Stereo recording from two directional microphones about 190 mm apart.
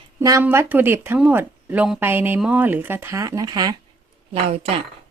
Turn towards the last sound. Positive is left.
turn(degrees=-30)  # may be behind; listen again after turning